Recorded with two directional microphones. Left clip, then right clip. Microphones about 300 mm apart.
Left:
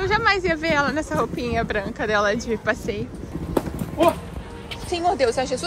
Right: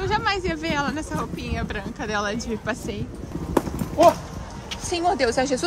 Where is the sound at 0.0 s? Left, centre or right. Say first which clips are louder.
Left 4 dB; centre.